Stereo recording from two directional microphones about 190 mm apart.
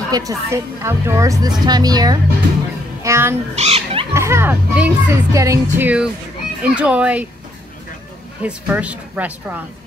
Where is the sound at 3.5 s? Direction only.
30° right (ahead or behind).